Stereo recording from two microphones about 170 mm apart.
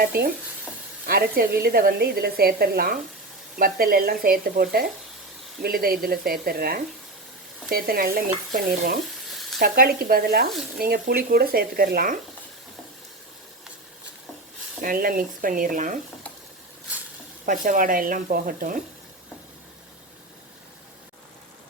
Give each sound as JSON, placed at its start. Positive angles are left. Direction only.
{"t": 0.0, "sound": "a woman's voice", "side_deg": -60}
{"t": 9.3, "sound": "sizzle", "side_deg": 0}
{"t": 9.6, "sound": "a woman's voice", "side_deg": -60}
{"t": 14.8, "sound": "a woman's voice", "side_deg": -55}
{"t": 17.4, "sound": "speech", "side_deg": -50}